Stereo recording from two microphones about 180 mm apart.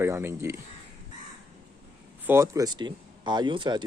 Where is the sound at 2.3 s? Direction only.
15° right (ahead or behind).